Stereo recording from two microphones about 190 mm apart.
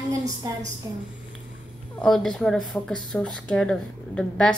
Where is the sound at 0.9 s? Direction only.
15° right (ahead or behind).